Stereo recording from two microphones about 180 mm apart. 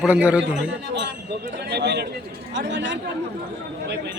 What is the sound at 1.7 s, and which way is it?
Speech, 70° right (ahead or behind).